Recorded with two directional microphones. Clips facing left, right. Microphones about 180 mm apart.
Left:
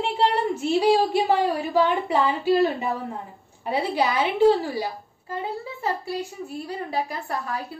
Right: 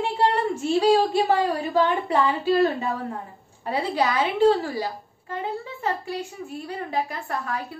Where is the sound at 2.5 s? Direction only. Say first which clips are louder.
Left 1 dB; 15° left (ahead or behind).